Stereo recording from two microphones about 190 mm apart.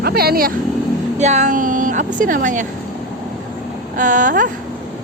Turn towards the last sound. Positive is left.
turn(degrees=-45)  # may be behind; listen again after turning